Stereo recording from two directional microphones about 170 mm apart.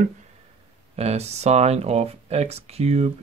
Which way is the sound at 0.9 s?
40° right (ahead or behind).